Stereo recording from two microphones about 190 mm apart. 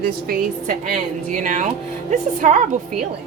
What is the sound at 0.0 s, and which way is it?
A woman's voice, 50° right (ahead or behind).